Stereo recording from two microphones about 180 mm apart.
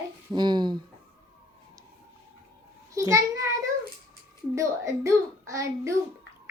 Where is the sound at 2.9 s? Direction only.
15° right (ahead or behind).